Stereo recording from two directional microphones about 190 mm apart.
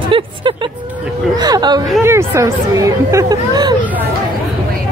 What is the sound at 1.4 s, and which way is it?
A woman's voice, 20° right (ahead or behind).